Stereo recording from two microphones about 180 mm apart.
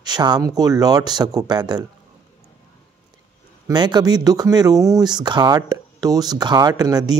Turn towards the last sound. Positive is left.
turn(degrees=-20)  # may be behind; listen again after turning